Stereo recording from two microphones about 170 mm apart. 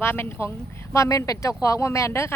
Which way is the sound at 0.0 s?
15° left (ahead or behind).